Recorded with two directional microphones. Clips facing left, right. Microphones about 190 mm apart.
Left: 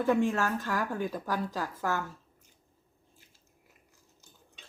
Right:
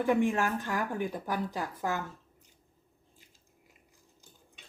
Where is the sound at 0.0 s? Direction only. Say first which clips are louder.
Even; 15° right (ahead or behind).